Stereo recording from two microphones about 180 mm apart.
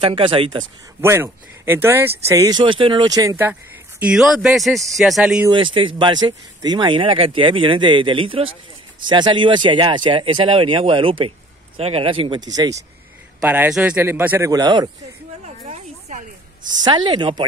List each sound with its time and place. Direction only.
0.0 s speech: 30° right (ahead or behind)
4.0 s a man's voice: 5° right (ahead or behind)
5.5 s speech: 25° right (ahead or behind)
13.4 s a man's voice: 10° right (ahead or behind)
15.4 s a sound: 40° right (ahead or behind)
16.8 s speech: 25° right (ahead or behind)